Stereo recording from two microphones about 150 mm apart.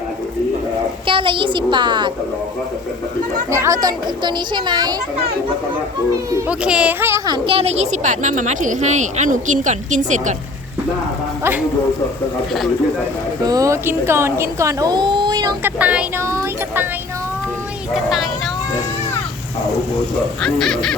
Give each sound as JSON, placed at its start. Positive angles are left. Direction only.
{"t": 1.0, "sound": "a woman's voice", "side_deg": -35}
{"t": 3.5, "sound": "speech", "side_deg": -20}
{"t": 6.5, "sound": "speech", "side_deg": -5}
{"t": 7.3, "sound": "speech", "side_deg": -35}
{"t": 13.4, "sound": "speech", "side_deg": -25}
{"t": 15.6, "sound": "speech", "side_deg": -10}
{"t": 17.9, "sound": "honk", "side_deg": 0}
{"t": 20.4, "sound": "honk", "side_deg": 5}